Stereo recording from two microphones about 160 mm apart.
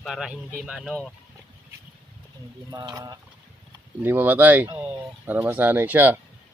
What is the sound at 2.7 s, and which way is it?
Speech, 25° right (ahead or behind).